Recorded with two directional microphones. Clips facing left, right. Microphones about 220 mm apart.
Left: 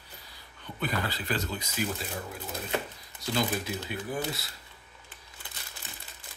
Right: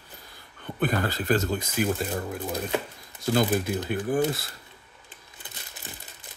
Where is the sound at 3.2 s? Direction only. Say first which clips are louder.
Right 7 dB; 50° right (ahead or behind).